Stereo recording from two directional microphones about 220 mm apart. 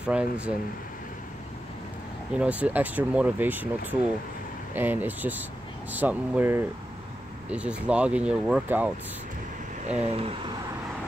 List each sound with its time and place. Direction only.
0.0 s speech: 5° right (ahead or behind)
2.3 s speech: 5° right (ahead or behind)
9.8 s speech: 30° right (ahead or behind)